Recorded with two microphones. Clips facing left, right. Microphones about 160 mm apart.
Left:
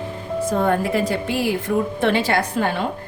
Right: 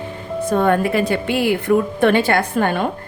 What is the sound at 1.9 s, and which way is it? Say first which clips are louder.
Speech: right 4 dB; 55° right (ahead or behind).